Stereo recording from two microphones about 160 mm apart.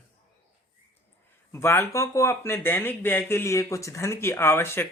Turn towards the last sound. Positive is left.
turn(degrees=15)  # may be behind; listen again after turning